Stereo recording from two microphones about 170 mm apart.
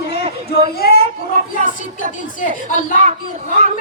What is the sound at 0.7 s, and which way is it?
Speech, 65° left (ahead or behind).